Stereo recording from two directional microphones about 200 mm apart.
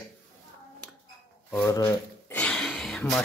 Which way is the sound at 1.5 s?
15° left (ahead or behind).